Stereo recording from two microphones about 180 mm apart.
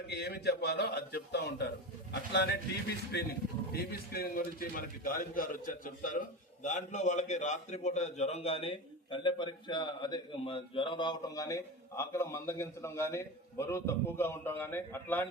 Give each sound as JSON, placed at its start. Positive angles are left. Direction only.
{"t": 0.1, "sound": "a man's voice", "side_deg": 65}
{"t": 3.7, "sound": "a man's voice", "side_deg": 60}